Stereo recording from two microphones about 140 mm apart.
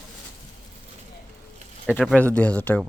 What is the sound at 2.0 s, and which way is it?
Speech, 5° left (ahead or behind).